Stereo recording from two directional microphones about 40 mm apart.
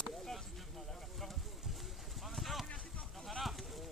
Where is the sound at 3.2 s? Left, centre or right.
Centre.